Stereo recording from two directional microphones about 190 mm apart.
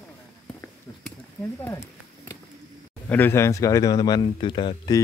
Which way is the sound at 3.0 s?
10° left (ahead or behind).